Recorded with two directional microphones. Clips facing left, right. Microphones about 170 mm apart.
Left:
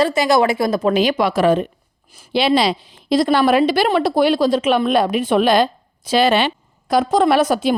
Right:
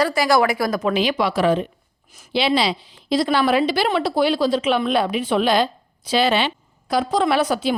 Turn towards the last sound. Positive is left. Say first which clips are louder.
# left 4 dB
turn(degrees=50)  # may be behind; listen again after turning